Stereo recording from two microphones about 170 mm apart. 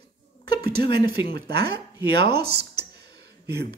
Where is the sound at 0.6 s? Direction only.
70° right (ahead or behind).